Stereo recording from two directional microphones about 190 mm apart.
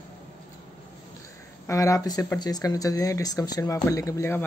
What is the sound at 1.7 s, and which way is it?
Speech, 15° left (ahead or behind).